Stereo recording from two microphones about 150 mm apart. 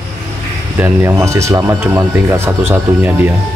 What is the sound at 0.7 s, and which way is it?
Speech, 20° right (ahead or behind).